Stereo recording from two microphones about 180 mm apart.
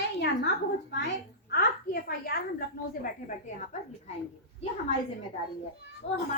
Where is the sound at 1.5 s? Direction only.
60° left (ahead or behind).